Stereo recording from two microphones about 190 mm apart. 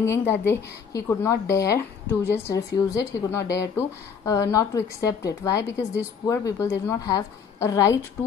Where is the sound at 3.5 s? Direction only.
15° left (ahead or behind).